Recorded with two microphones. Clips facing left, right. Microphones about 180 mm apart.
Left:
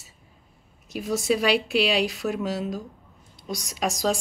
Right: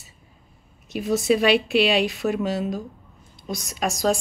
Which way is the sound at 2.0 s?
Centre (ahead or behind).